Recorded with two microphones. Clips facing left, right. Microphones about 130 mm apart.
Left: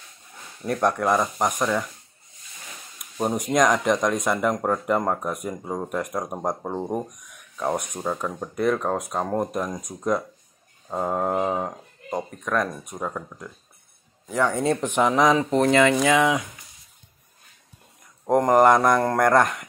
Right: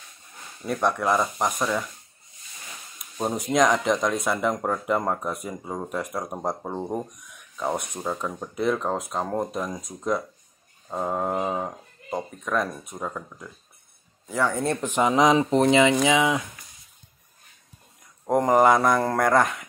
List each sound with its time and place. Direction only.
0.7 s speech: centre (ahead or behind)
3.2 s speech: 10° left (ahead or behind)
3.4 s speech: 5° right (ahead or behind)
10.9 s speech: 5° left (ahead or behind)
15.1 s speech: 20° right (ahead or behind)
15.5 s speech: centre (ahead or behind)
18.2 s speech: centre (ahead or behind)